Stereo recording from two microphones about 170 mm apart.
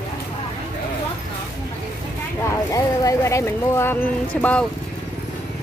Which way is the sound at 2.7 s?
20° left (ahead or behind).